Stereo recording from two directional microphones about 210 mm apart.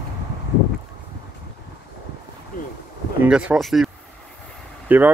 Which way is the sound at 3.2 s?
5° right (ahead or behind).